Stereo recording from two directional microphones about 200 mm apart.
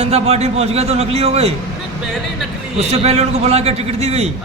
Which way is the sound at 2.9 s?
30° right (ahead or behind).